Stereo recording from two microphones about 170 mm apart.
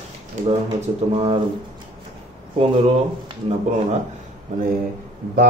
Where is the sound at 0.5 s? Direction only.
35° right (ahead or behind).